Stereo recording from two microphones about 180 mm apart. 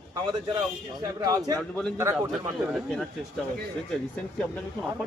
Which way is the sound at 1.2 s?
20° right (ahead or behind).